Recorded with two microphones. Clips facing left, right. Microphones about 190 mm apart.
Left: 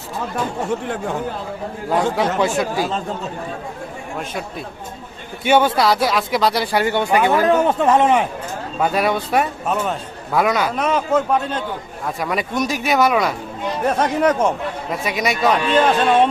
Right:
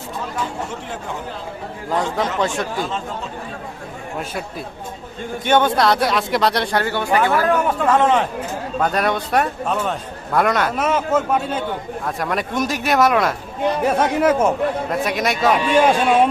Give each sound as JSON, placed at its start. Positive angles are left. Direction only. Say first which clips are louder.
{"t": 2.4, "sound": "speech", "louder": "left 3 dB", "side_deg": 5}
{"t": 5.5, "sound": "speech", "louder": "left 1 dB", "side_deg": 5}
{"t": 6.8, "sound": "speech", "louder": "left 4 dB", "side_deg": 15}